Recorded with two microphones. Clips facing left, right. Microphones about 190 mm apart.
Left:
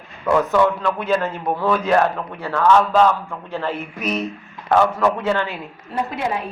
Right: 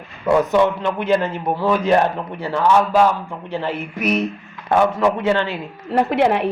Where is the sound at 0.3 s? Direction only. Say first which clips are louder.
Right 1 dB; 20° right (ahead or behind).